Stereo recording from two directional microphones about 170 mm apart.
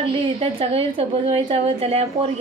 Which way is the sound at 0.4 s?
35° right (ahead or behind).